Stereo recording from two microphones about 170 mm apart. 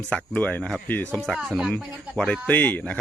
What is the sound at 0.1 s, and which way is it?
Speech, 10° left (ahead or behind).